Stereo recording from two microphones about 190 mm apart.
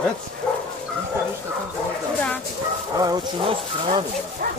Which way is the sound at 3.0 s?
25° right (ahead or behind).